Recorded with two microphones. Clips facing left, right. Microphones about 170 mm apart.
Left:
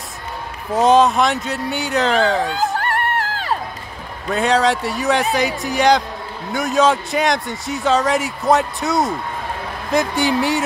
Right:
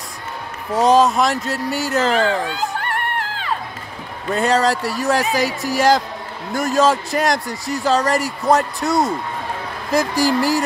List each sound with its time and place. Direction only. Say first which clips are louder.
0.7 s speech: left 1 dB; centre (ahead or behind)
2.5 s music: left 3 dB; 40° left (ahead or behind)
4.3 s speech: even; centre (ahead or behind)